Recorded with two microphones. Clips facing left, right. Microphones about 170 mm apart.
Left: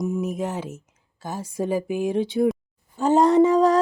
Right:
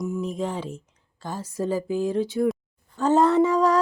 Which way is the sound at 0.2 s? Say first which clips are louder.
Left 1 dB; 10° left (ahead or behind).